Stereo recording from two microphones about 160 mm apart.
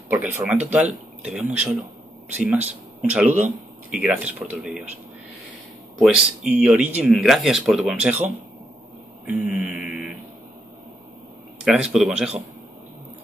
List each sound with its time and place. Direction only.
0.1 s speech: 10° right (ahead or behind)
3.3 s speech: 50° right (ahead or behind)
3.9 s speech: 10° right (ahead or behind)
5.9 s speech: 10° right (ahead or behind)
9.8 s a sound: 55° left (ahead or behind)
11.6 s speech: 5° right (ahead or behind)